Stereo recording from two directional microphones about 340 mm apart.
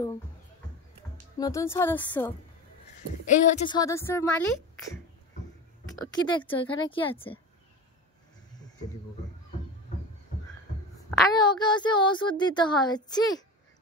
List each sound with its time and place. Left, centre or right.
1.4 s speech: centre
6.1 s speech: centre
11.3 s speech: centre